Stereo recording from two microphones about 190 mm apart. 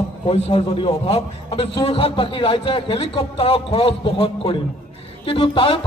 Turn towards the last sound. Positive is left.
turn(degrees=30)  # may be behind; listen again after turning